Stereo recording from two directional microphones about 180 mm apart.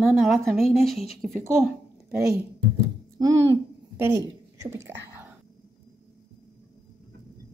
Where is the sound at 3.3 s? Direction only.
90° right.